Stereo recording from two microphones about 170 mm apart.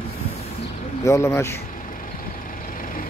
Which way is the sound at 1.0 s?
15° left (ahead or behind).